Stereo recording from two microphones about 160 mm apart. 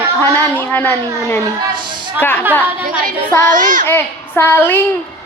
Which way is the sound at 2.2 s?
10° left (ahead or behind).